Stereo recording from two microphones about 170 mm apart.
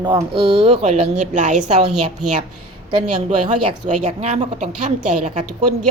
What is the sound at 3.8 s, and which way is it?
A woman's voice, 45° right (ahead or behind).